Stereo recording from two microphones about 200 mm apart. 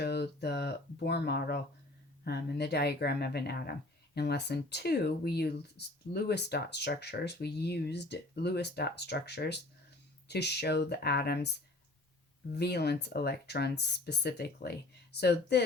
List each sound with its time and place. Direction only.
0.0 s speech: 55° left (ahead or behind)
12.5 s speech: 55° left (ahead or behind)